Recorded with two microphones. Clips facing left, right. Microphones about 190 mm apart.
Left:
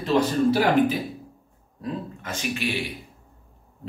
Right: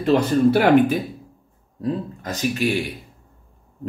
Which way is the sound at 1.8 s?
35° right (ahead or behind).